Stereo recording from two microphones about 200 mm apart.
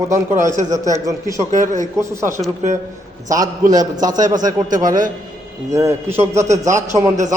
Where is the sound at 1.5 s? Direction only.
40° right (ahead or behind).